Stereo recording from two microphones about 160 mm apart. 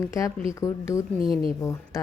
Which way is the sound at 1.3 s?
35° right (ahead or behind).